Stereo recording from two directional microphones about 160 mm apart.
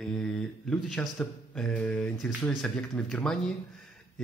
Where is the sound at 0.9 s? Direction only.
5° left (ahead or behind).